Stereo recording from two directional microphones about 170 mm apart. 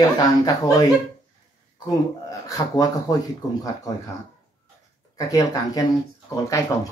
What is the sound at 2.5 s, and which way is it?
Speech, 20° left (ahead or behind).